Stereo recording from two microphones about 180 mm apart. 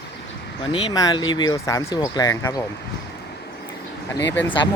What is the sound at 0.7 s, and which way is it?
Speech, 25° left (ahead or behind).